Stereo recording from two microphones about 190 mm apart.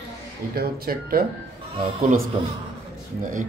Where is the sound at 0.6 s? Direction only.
50° right (ahead or behind).